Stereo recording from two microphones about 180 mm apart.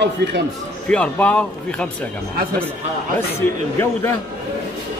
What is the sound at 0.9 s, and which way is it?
Speech, 5° left (ahead or behind).